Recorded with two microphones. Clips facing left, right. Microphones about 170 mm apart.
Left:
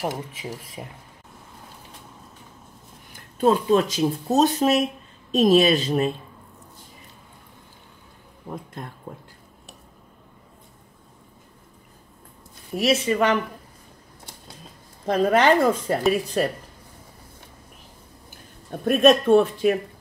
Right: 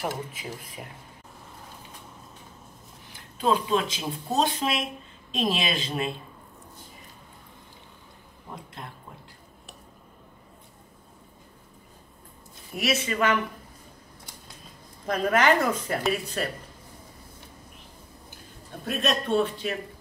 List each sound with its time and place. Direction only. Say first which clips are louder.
0.0 s speech: left 3 dB; 15° left (ahead or behind)
3.3 s speech: left 6 dB; 45° left (ahead or behind)
12.7 s a woman's voice: left 6 dB; 30° left (ahead or behind)
15.0 s a woman's voice: left 4 dB; 30° left (ahead or behind)
18.9 s speech: left 11 dB; 50° left (ahead or behind)